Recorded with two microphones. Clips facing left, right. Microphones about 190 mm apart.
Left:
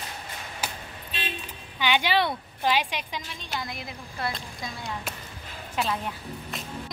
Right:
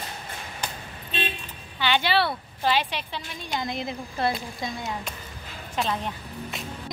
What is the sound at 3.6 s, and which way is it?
A woman's voice, 25° right (ahead or behind).